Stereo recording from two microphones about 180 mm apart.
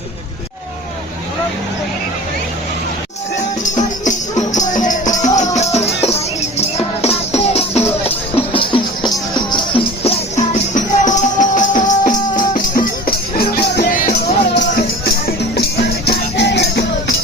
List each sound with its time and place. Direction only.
3.6 s music: 45° left (ahead or behind)
14.5 s music: 70° left (ahead or behind)